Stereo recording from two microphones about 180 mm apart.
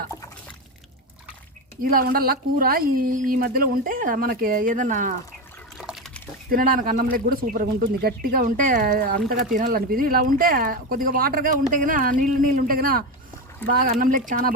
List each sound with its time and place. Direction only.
1.8 s speech: 55° right (ahead or behind)
5.7 s a sound: centre (ahead or behind)
6.5 s speech: 50° right (ahead or behind)